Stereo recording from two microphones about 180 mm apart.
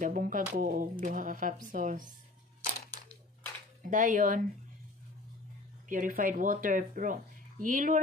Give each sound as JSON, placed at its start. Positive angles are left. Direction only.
{"t": 0.0, "sound": "speech", "side_deg": -50}
{"t": 3.8, "sound": "speech", "side_deg": -45}
{"t": 5.9, "sound": "speech", "side_deg": -50}